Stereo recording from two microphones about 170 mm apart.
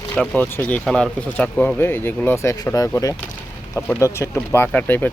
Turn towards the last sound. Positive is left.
turn(degrees=10)  # may be behind; listen again after turning